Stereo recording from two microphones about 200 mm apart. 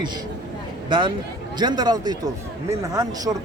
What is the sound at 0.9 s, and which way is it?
A man's voice, 25° right (ahead or behind).